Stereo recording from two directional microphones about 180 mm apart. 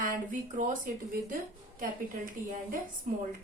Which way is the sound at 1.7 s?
50° right (ahead or behind).